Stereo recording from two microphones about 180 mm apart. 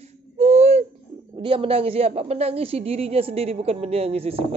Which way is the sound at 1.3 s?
30° right (ahead or behind).